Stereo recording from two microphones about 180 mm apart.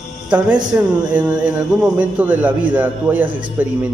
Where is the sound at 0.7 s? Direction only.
5° right (ahead or behind).